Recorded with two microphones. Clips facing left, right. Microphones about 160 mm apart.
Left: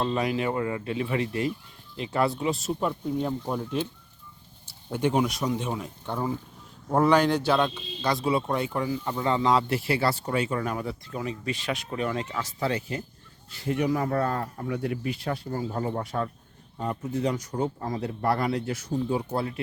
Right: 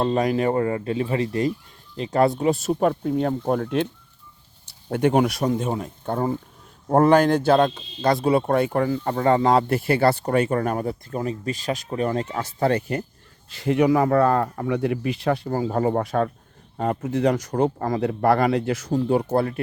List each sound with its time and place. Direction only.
0.0 s speech: 45° right (ahead or behind)
2.8 s speech: 75° right (ahead or behind)
4.9 s speech: 60° right (ahead or behind)
13.5 s speech: 90° right
16.7 s speech: 75° right (ahead or behind); by 19.5 s 55° right (ahead or behind)